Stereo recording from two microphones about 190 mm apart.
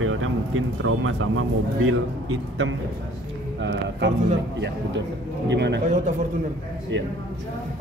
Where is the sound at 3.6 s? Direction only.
70° right (ahead or behind).